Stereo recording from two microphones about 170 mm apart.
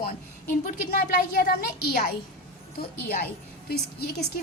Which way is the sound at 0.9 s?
60° left (ahead or behind).